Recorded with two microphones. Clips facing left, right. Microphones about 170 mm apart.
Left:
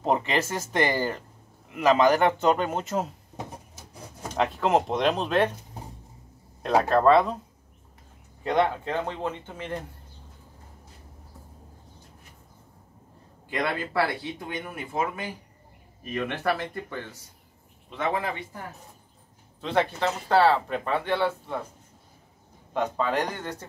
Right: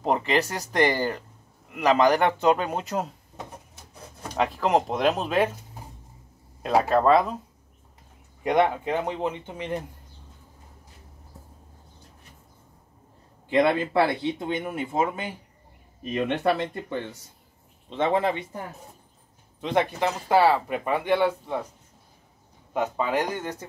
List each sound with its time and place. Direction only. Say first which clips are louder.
0.0 s a man's voice: right 1 dB; centre (ahead or behind)
4.4 s a man's voice: even; centre (ahead or behind)
6.6 s speech: even; 5° right (ahead or behind)
8.5 s speech: right 2 dB; 15° right (ahead or behind)
13.5 s speech: right 8 dB; 20° right (ahead or behind)
19.6 s speech: right 1 dB; 15° right (ahead or behind)
22.8 s speech: right 1 dB; 10° right (ahead or behind)